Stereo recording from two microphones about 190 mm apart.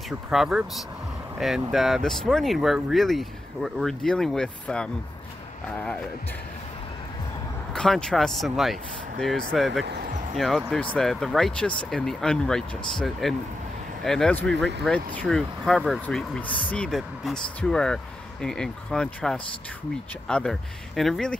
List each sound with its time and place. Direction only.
0.3 s speech: 5° right (ahead or behind)
7.7 s speech: 5° left (ahead or behind)
9.8 s speech: 60° right (ahead or behind)
10.3 s speech: centre (ahead or behind)
16.4 s speech: 25° left (ahead or behind)
16.7 s speech: 5° left (ahead or behind)